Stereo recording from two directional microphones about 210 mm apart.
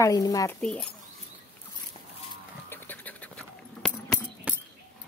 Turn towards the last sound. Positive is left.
turn(degrees=-5)  # may be behind; listen again after turning